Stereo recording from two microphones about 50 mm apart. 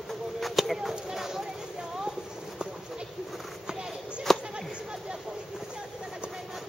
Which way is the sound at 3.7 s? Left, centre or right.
Centre.